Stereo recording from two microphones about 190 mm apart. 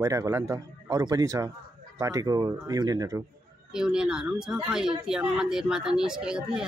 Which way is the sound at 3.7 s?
5° right (ahead or behind).